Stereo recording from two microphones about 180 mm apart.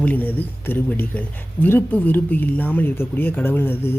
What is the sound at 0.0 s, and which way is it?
Speech, 10° left (ahead or behind).